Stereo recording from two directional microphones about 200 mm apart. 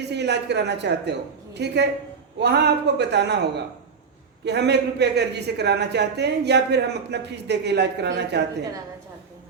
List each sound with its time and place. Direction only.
0.0 s speech: 55° right (ahead or behind)
4.4 s speech: 60° right (ahead or behind)